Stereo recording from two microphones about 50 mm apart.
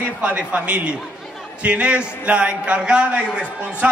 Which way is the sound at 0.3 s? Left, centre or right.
Right.